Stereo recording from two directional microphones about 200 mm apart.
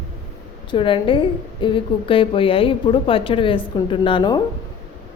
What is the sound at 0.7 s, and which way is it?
A woman's voice, 25° left (ahead or behind).